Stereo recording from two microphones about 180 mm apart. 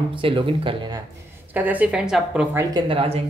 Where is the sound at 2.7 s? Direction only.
30° right (ahead or behind).